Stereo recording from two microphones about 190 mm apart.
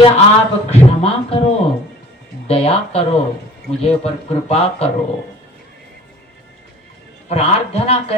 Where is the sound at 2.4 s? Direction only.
30° left (ahead or behind).